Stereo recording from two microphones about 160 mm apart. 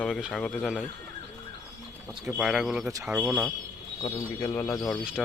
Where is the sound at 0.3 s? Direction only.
5° left (ahead or behind).